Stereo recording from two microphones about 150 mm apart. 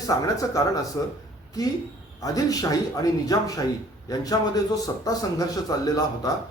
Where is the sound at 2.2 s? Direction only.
25° left (ahead or behind).